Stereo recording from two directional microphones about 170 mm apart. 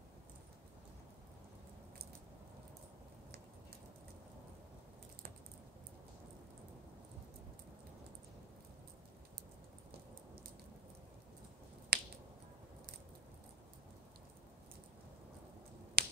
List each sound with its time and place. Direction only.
11.9 s finger snapping: 65° right (ahead or behind)
16.0 s finger snapping: 60° right (ahead or behind)